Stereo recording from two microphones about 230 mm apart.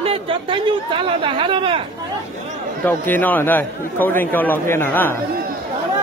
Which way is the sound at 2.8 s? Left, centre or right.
Centre.